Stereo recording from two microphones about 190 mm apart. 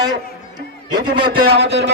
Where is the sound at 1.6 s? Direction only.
65° right (ahead or behind).